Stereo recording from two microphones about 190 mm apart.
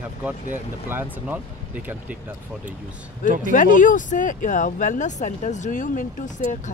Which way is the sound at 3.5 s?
45° left (ahead or behind).